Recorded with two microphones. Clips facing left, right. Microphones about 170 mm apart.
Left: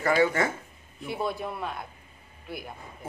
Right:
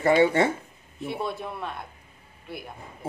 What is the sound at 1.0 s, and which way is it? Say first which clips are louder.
Speech: even; centre (ahead or behind).